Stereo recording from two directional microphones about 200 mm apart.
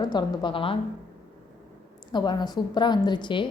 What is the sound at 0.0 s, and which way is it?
Speech, 20° left (ahead or behind).